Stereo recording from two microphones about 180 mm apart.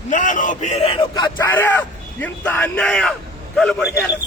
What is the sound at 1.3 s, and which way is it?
A man's voice, 10° left (ahead or behind).